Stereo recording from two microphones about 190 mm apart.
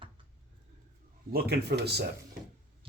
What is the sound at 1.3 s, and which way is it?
Speech, 55° right (ahead or behind).